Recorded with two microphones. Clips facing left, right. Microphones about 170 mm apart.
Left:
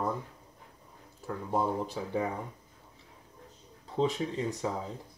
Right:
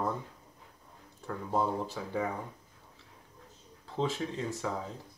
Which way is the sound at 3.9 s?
15° left (ahead or behind).